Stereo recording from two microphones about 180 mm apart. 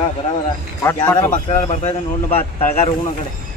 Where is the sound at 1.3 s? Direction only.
35° left (ahead or behind).